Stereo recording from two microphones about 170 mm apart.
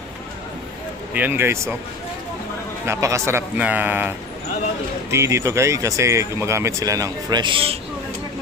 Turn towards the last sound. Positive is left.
turn(degrees=-30)  # may be behind; listen again after turning